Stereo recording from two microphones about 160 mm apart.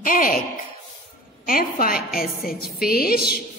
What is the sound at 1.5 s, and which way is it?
A woman's voice, 65° left (ahead or behind).